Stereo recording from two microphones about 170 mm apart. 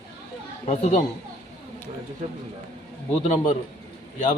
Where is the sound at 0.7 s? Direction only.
45° left (ahead or behind).